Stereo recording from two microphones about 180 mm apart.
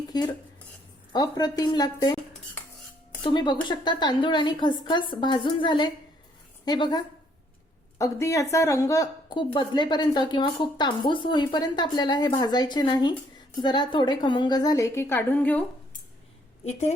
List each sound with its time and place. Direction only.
0.1 s speech: 20° left (ahead or behind)
3.2 s speech: 25° left (ahead or behind); by 15.6 s 10° left (ahead or behind)